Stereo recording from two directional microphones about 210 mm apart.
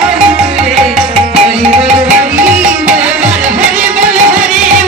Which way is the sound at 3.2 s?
35° right (ahead or behind).